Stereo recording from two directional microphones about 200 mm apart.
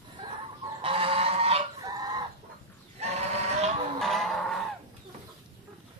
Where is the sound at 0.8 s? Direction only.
25° right (ahead or behind).